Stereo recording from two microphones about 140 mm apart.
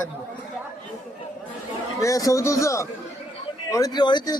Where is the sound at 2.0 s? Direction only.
25° left (ahead or behind).